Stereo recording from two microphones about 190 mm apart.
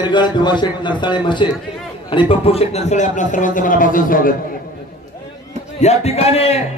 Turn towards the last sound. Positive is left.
turn(degrees=30)  # may be behind; listen again after turning